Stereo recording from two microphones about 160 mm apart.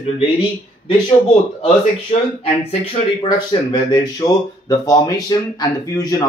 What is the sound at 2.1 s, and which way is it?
Speech, 40° left (ahead or behind).